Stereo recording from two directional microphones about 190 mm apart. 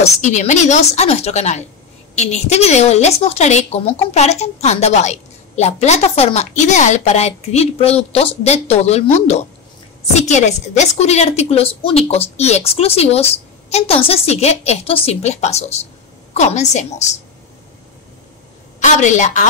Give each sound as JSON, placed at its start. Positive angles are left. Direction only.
{"t": 0.0, "sound": "a woman's voice", "side_deg": 40}
{"t": 18.8, "sound": "a woman's voice", "side_deg": 40}